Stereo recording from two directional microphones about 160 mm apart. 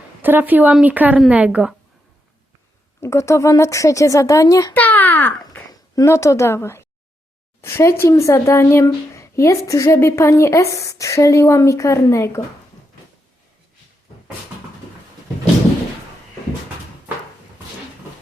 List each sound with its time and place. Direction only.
0.2 s a woman's voice: 10° right (ahead or behind)
3.0 s speech: 20° left (ahead or behind)
4.8 s babbling: 10° left (ahead or behind)
6.0 s speech: 20° left (ahead or behind)